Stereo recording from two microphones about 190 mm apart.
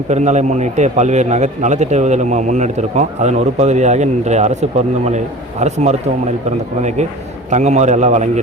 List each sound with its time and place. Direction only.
0.1 s a man's voice: 35° right (ahead or behind)